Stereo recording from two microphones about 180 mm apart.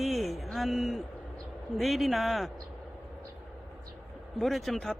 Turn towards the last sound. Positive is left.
turn(degrees=0)  # may be behind; listen again after turning